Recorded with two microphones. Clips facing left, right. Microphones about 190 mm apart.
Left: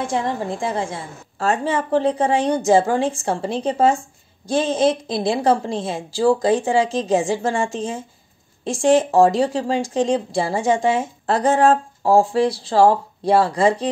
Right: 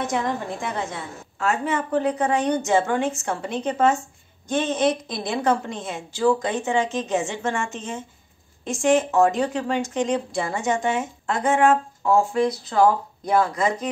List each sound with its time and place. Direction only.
0.0 s speech: 30° left (ahead or behind)